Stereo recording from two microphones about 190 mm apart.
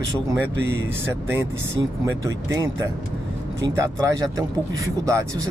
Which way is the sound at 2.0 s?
15° right (ahead or behind).